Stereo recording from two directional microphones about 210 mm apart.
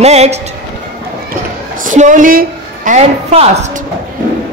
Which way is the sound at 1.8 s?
40° right (ahead or behind).